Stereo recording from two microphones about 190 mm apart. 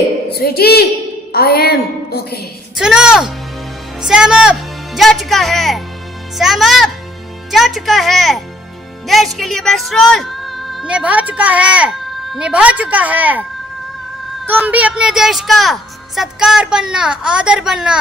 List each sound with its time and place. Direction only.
0.3 s a woman's voice: 55° left (ahead or behind)
2.7 s a woman's voice: 5° right (ahead or behind)
14.4 s a woman's voice: 10° right (ahead or behind)